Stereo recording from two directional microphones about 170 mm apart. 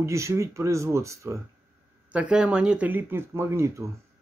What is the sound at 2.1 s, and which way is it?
A man's voice, 5° right (ahead or behind).